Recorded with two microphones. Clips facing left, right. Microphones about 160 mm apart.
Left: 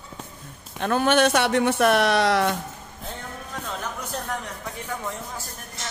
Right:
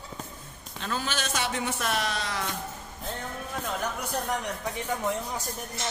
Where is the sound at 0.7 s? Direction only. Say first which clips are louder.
Left 12 dB; 60° left (ahead or behind).